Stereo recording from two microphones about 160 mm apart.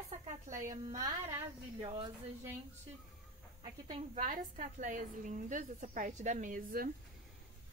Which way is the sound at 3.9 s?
55° right (ahead or behind).